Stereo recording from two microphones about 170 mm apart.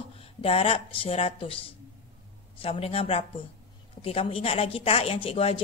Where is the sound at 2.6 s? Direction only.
35° left (ahead or behind).